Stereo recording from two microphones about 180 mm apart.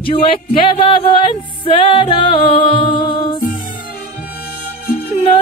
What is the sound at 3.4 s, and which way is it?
Music, 50° left (ahead or behind).